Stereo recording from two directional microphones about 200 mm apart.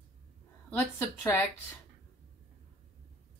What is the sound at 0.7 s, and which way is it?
Speech, 15° left (ahead or behind).